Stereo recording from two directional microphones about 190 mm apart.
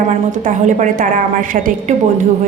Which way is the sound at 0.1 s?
40° right (ahead or behind).